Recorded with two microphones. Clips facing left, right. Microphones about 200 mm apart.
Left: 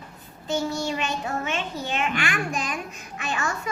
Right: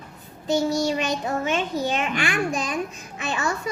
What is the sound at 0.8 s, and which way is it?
A child's voice, 40° right (ahead or behind).